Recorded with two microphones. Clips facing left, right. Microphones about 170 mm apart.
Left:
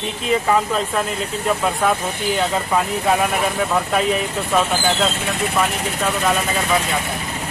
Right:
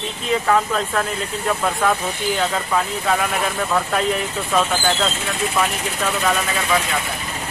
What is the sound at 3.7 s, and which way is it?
Speech, 5° left (ahead or behind).